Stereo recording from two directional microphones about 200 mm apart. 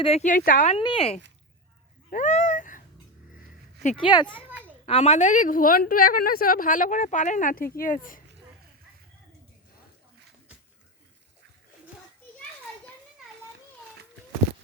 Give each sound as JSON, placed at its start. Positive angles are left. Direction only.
{"t": 0.0, "sound": "speech", "side_deg": 35}
{"t": 0.8, "sound": "speech", "side_deg": 25}
{"t": 2.0, "sound": "a sound", "side_deg": 40}
{"t": 3.8, "sound": "speech", "side_deg": 25}
{"t": 4.9, "sound": "a woman's voice", "side_deg": 35}